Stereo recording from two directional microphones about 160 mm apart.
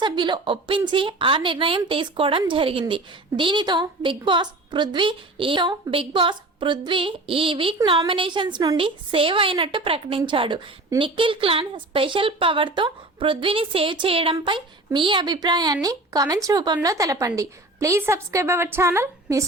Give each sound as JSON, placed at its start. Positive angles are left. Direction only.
{"t": 0.0, "sound": "a woman's voice", "side_deg": -30}